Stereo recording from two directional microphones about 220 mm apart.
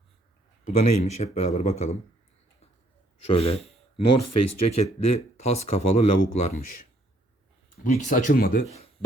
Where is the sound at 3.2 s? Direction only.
25° left (ahead or behind).